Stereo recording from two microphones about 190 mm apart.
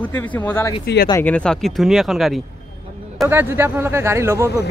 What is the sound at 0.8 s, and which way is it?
Speech, 55° left (ahead or behind).